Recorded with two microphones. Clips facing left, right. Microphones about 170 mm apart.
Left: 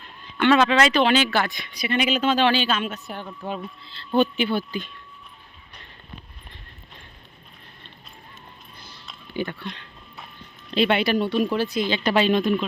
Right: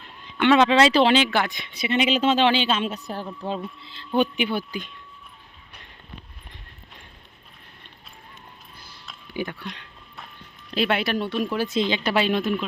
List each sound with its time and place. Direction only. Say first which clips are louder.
0.3 s speech: right 1 dB; 20° right (ahead or behind)
3.8 s speech: left 3 dB; 15° right (ahead or behind)
9.0 s a sound: left 1 dB; 10° right (ahead or behind)
10.7 s speech: left 3 dB; centre (ahead or behind)
11.7 s speech: right 1 dB; 25° right (ahead or behind)
11.9 s speech: left 2 dB; 10° right (ahead or behind)